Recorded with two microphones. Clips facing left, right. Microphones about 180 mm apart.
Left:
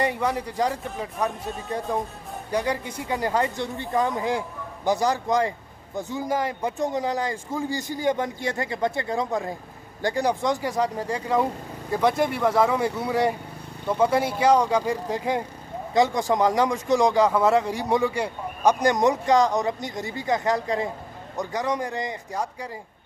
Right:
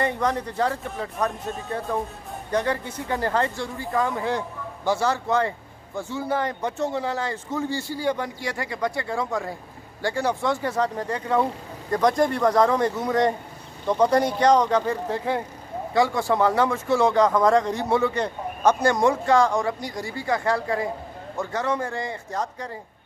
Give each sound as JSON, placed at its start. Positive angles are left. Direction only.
{"t": 0.0, "sound": "a man's voice", "side_deg": 10}
{"t": 1.1, "sound": "speech", "side_deg": 0}
{"t": 2.5, "sound": "a man's voice", "side_deg": 15}